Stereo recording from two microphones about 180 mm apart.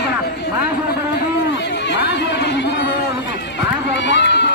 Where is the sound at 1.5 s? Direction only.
80° left.